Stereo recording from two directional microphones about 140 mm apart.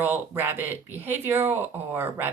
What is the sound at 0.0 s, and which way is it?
Speech, 15° right (ahead or behind).